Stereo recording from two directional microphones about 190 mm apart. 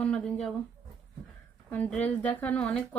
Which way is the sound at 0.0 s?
5° left (ahead or behind).